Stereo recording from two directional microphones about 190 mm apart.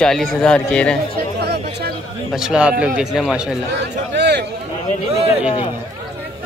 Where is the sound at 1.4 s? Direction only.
60° right (ahead or behind).